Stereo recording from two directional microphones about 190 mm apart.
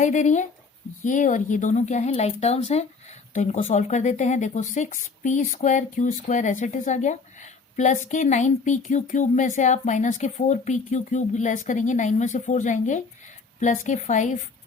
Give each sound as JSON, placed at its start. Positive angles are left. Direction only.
{"t": 0.0, "sound": "speech", "side_deg": 40}